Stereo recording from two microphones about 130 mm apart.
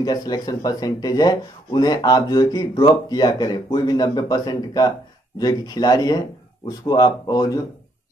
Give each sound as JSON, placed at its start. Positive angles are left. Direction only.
{"t": 0.0, "sound": "speech", "side_deg": 30}